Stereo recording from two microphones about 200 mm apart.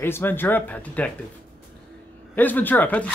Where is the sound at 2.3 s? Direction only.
10° left (ahead or behind).